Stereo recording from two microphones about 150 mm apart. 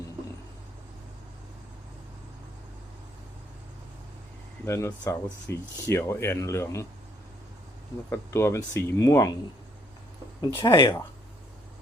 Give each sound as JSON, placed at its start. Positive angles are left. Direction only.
{"t": 4.6, "sound": "speech", "side_deg": 20}
{"t": 8.1, "sound": "speech", "side_deg": 20}
{"t": 10.4, "sound": "speech", "side_deg": 30}